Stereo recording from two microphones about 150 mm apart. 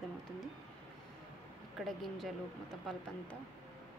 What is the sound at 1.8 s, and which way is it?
Speech, centre (ahead or behind).